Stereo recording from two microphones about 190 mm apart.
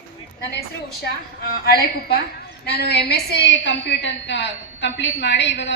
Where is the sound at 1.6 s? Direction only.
55° left (ahead or behind).